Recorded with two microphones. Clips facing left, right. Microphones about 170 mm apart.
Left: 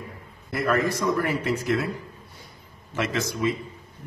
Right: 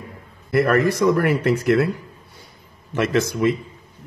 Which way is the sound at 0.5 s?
65° right (ahead or behind).